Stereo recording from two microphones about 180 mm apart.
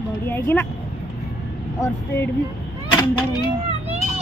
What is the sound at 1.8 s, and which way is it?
Speech, 15° left (ahead or behind).